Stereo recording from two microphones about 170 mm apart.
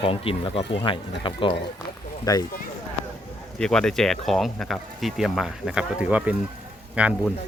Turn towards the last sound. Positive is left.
turn(degrees=-5)  # may be behind; listen again after turning